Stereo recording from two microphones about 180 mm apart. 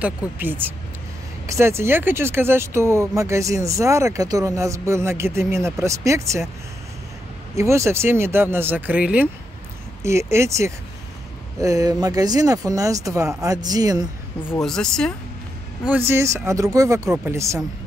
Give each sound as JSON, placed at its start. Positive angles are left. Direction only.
{"t": 0.0, "sound": "speech", "side_deg": -10}
{"t": 7.5, "sound": "speech", "side_deg": -15}
{"t": 14.6, "sound": "speech", "side_deg": 5}
{"t": 16.1, "sound": "speech", "side_deg": -15}